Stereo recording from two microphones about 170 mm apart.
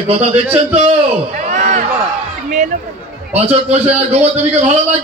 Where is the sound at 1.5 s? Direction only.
45° right (ahead or behind).